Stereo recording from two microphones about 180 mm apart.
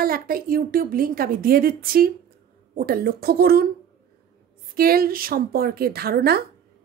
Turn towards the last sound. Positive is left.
turn(degrees=-60)  # may be behind; listen again after turning